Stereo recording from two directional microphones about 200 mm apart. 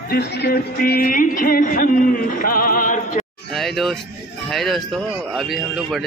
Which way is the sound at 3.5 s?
Centre (ahead or behind).